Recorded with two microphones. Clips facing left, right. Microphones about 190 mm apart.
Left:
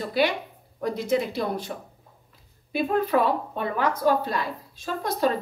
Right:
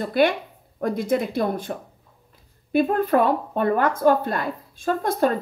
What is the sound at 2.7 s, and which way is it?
A woman's voice, 50° right (ahead or behind).